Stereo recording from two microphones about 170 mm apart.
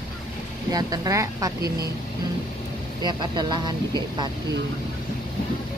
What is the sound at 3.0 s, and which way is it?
Speech, 25° right (ahead or behind).